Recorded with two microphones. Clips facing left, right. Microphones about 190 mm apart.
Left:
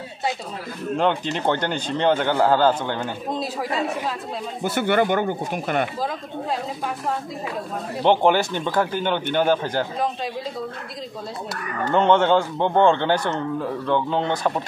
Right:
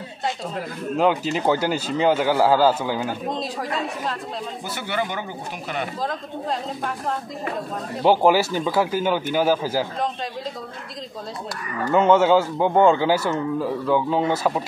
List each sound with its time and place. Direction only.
0.9 s speech: 5° right (ahead or behind)
4.6 s speech: 55° left (ahead or behind)
8.0 s speech: 5° right (ahead or behind)
11.9 s speech: 5° right (ahead or behind)